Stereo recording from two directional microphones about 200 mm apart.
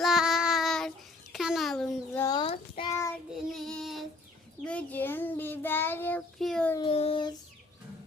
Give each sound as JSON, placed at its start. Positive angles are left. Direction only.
{"t": 0.0, "sound": "child singing", "side_deg": 0}
{"t": 2.2, "sound": "a sound", "side_deg": 20}
{"t": 3.4, "sound": "child singing", "side_deg": 0}
{"t": 6.7, "sound": "child singing", "side_deg": 25}